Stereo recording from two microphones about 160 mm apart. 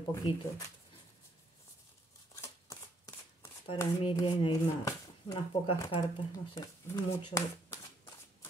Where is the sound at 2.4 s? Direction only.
15° left (ahead or behind).